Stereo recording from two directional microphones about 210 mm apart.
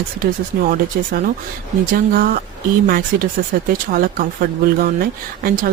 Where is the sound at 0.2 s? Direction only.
45° right (ahead or behind).